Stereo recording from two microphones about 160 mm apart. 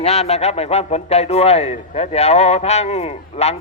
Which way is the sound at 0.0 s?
40° left (ahead or behind).